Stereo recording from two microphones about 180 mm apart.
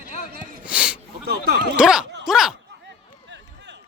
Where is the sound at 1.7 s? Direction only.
5° right (ahead or behind).